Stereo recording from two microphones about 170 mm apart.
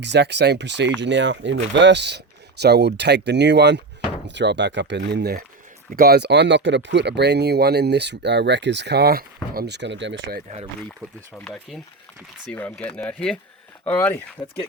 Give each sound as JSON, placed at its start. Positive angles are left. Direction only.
{"t": 0.0, "sound": "speech", "side_deg": -90}
{"t": 11.0, "sound": "speech", "side_deg": -15}
{"t": 11.3, "sound": "speech", "side_deg": 5}